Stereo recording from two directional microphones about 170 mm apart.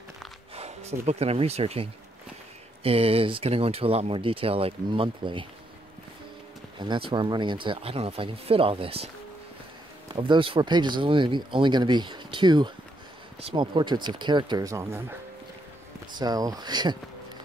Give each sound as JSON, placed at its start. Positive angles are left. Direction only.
{"t": 0.6, "sound": "speech", "side_deg": -40}
{"t": 6.8, "sound": "speech", "side_deg": -30}
{"t": 16.2, "sound": "speech", "side_deg": -20}